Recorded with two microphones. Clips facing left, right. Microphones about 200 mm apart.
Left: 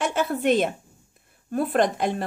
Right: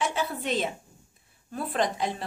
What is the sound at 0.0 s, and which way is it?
A woman's voice, 50° left (ahead or behind).